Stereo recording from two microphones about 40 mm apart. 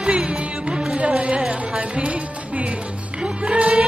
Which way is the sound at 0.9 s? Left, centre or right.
Right.